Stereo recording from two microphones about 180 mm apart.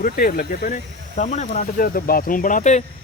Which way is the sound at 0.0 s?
50° left (ahead or behind).